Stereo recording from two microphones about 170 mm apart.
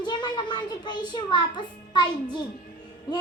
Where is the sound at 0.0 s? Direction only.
25° left (ahead or behind).